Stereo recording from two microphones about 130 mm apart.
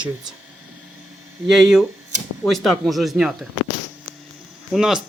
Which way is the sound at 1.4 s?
Centre (ahead or behind).